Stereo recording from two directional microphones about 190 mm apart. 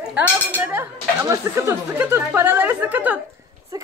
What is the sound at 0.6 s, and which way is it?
A woman's voice, 10° right (ahead or behind).